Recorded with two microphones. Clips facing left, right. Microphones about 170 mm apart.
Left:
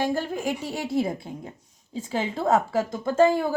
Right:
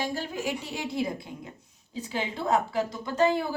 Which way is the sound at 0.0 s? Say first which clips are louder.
Left 5 dB; 50° left (ahead or behind).